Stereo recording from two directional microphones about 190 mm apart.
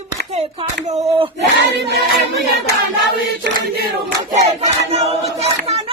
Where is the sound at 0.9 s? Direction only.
20° right (ahead or behind).